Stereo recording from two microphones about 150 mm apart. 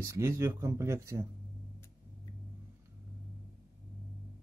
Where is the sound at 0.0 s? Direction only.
20° right (ahead or behind).